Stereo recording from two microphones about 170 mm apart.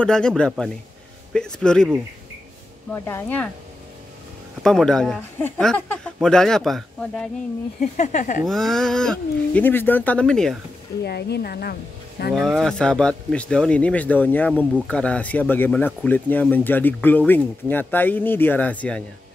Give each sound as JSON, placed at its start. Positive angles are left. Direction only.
{"t": 0.0, "sound": "speech", "side_deg": 5}
{"t": 2.9, "sound": "speech", "side_deg": 15}
{"t": 4.6, "sound": "speech", "side_deg": 5}
{"t": 8.0, "sound": "speech", "side_deg": 50}
{"t": 8.5, "sound": "speech", "side_deg": 5}
{"t": 11.1, "sound": "speech", "side_deg": 75}
{"t": 12.3, "sound": "speech", "side_deg": 0}